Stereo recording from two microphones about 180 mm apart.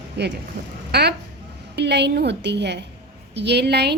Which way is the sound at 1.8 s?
70° right (ahead or behind).